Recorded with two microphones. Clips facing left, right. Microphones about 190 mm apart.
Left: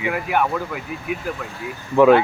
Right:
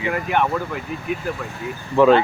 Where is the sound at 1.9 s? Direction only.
10° left (ahead or behind).